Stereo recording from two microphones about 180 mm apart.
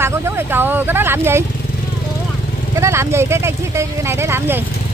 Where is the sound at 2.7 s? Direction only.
15° right (ahead or behind).